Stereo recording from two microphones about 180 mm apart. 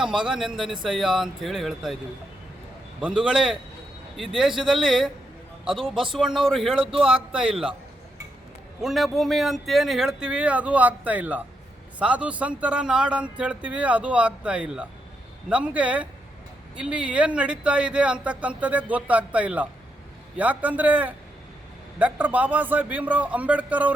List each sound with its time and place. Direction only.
0.0 s speech: 5° right (ahead or behind)
3.0 s speech: 5° right (ahead or behind)
7.5 s speech: 30° right (ahead or behind)
8.8 s speech: centre (ahead or behind)